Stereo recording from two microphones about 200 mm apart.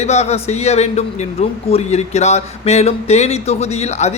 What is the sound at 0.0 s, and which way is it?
Speech, 35° left (ahead or behind).